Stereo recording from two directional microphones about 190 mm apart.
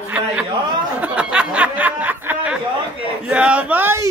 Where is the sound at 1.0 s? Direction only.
5° right (ahead or behind).